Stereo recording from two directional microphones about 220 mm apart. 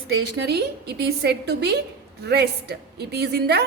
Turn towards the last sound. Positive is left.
turn(degrees=-45)  # may be behind; listen again after turning